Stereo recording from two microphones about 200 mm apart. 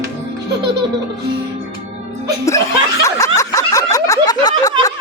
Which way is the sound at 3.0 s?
15° left (ahead or behind).